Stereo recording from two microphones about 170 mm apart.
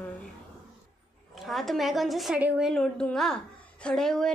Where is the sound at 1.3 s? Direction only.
Centre (ahead or behind).